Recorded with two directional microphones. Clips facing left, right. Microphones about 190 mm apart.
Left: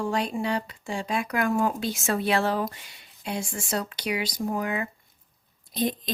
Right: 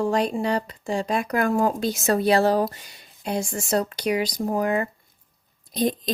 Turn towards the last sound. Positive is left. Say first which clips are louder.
# right 4 dB
turn(degrees=-40)  # may be behind; listen again after turning